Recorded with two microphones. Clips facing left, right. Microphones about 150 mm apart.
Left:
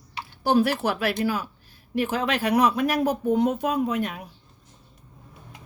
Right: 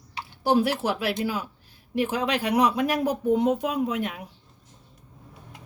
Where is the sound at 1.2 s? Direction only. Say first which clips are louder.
Left 3 dB; 20° right (ahead or behind).